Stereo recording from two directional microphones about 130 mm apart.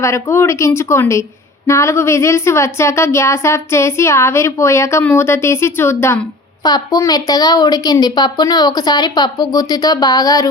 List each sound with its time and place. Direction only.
0.0 s a woman's voice: 20° left (ahead or behind)
6.6 s a woman's voice: 30° left (ahead or behind)